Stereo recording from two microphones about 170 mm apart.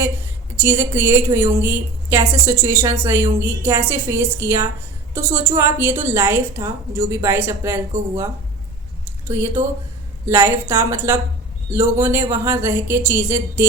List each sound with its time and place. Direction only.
0.5 s a woman's voice: 15° right (ahead or behind)